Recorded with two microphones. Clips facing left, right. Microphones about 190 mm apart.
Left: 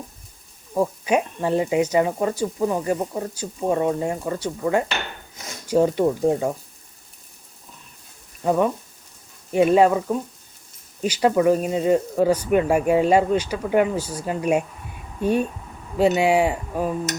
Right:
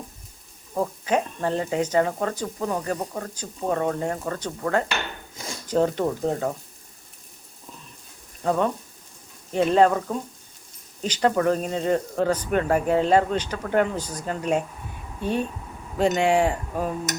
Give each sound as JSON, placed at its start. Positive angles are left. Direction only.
{"t": 1.0, "sound": "speech", "side_deg": 10}
{"t": 8.4, "sound": "speech", "side_deg": 10}
{"t": 16.0, "sound": "speech", "side_deg": 10}